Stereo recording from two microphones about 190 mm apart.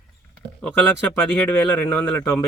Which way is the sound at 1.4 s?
10° left (ahead or behind).